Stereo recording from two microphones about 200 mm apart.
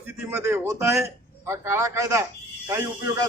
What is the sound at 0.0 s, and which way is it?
A man's voice, 10° right (ahead or behind).